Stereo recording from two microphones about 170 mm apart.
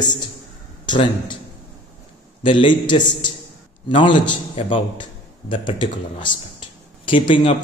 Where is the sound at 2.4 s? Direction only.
30° left (ahead or behind).